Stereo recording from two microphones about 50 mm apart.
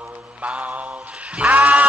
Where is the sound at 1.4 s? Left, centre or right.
Right.